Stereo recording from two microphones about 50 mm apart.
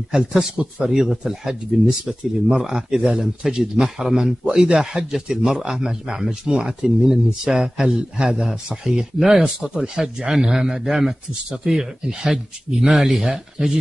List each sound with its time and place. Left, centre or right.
0.1 s speech: centre